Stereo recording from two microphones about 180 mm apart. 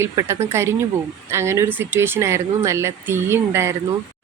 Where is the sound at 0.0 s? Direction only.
15° right (ahead or behind).